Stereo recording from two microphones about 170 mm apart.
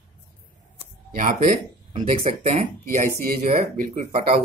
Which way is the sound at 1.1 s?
50° right (ahead or behind).